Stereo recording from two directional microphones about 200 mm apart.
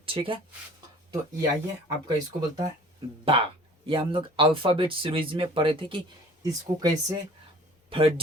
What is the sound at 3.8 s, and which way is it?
Speech, 25° right (ahead or behind).